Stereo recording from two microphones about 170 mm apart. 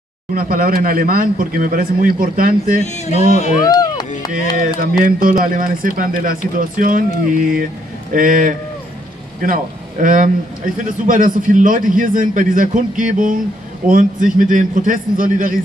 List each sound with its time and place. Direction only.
0.3 s speech: 55° right (ahead or behind)
2.8 s speech: 40° left (ahead or behind)
3.6 s a sound: 20° left (ahead or behind)
4.7 s a man's voice: 55° right (ahead or behind)
8.1 s a man's voice: 50° right (ahead or behind)